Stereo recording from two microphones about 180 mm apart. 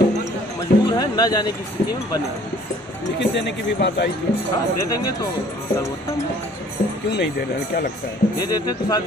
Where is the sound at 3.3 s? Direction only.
70° left (ahead or behind).